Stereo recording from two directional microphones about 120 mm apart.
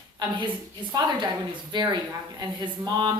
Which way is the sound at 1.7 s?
35° right (ahead or behind).